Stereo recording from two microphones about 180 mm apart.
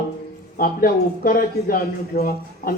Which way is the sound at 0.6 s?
50° left (ahead or behind).